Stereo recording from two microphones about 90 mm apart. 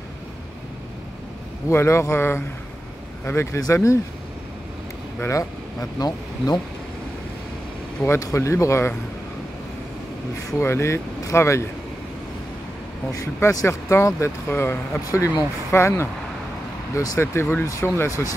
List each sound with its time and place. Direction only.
1.7 s speech: 30° left (ahead or behind)
5.3 s speech: 40° left (ahead or behind)
8.2 s speech: 35° left (ahead or behind)
10.6 s speech: 30° left (ahead or behind)
13.1 s speech: 40° left (ahead or behind)
15.0 s speech: 40° left (ahead or behind)
17.2 s speech: 30° left (ahead or behind)